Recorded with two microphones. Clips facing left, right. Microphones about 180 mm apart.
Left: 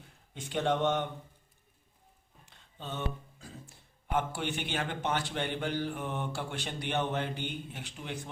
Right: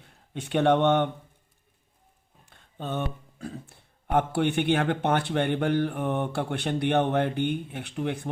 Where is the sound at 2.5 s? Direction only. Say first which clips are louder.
Right 8 dB; 55° right (ahead or behind).